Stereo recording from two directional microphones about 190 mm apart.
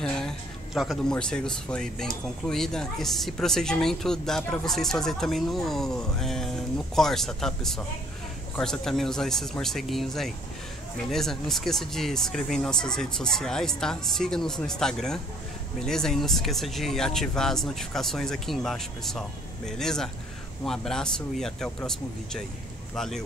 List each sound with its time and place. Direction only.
0.0 s speech: 5° left (ahead or behind)